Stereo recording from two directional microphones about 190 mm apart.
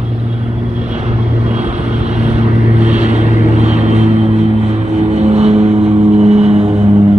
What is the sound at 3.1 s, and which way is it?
Vehicle, 35° right (ahead or behind).